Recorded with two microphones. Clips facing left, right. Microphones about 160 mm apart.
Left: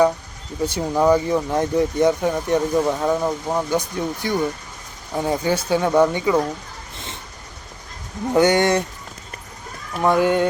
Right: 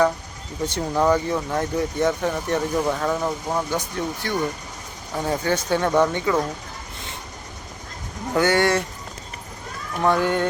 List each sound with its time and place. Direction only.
0.7 s speech: 10° left (ahead or behind)
8.3 s speech: 20° left (ahead or behind)
10.0 s speech: 15° left (ahead or behind)